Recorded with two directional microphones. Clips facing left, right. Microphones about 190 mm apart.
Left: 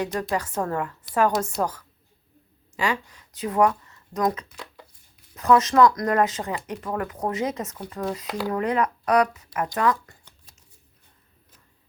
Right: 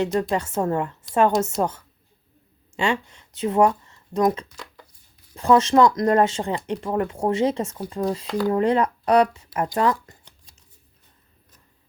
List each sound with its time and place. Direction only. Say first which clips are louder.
0.0 s speech: right 4 dB; 25° right (ahead or behind)
4.4 s a sound: even; 5° left (ahead or behind)
5.3 s speech: right 2 dB; 30° right (ahead or behind)